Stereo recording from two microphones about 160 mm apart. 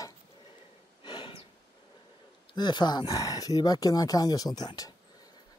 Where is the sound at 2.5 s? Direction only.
25° left (ahead or behind).